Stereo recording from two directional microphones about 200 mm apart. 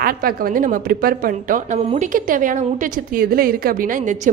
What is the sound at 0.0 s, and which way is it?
A woman's voice, 50° right (ahead or behind).